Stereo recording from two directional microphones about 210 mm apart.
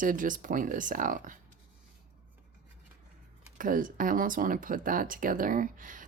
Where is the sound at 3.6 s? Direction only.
40° right (ahead or behind).